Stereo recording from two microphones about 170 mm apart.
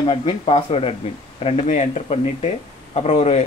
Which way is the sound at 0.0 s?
30° left (ahead or behind).